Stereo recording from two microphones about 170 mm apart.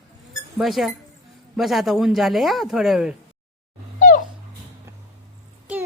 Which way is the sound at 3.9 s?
50° left (ahead or behind).